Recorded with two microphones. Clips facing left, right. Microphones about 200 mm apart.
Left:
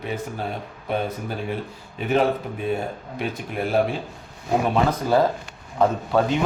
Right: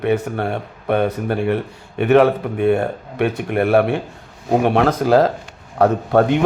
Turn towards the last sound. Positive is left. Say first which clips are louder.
# right 6 dB
turn(degrees=-60)  # may be behind; listen again after turning